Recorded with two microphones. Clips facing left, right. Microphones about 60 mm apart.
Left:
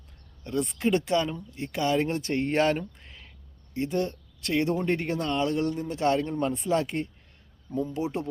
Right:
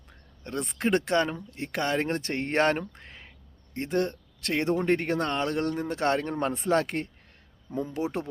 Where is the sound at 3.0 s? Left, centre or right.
Right.